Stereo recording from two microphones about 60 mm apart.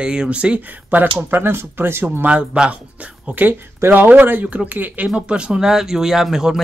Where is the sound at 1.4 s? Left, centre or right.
Right.